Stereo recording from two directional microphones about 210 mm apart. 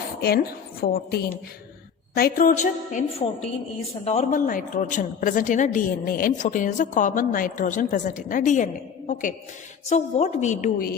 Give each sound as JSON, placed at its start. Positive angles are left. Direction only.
{"t": 0.2, "sound": "a woman's voice", "side_deg": 45}